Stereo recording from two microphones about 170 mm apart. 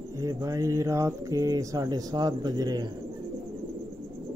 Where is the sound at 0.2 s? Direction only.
20° right (ahead or behind).